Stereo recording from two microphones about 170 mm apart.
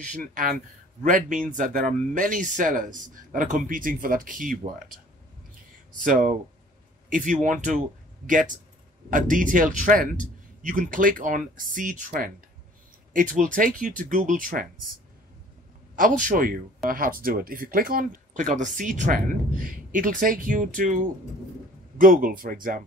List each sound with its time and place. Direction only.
0.2 s speech: 55° right (ahead or behind)
5.9 s speech: 50° right (ahead or behind)
16.0 s speech: 50° right (ahead or behind)